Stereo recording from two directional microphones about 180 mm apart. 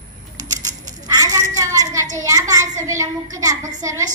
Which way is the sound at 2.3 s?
20° right (ahead or behind).